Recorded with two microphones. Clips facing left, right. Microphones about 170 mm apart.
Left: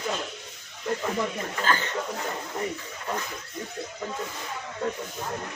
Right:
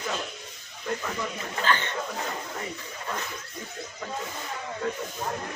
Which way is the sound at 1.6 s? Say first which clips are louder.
Even; 40° left (ahead or behind).